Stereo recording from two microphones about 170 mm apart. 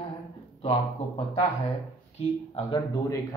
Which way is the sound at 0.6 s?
30° left (ahead or behind).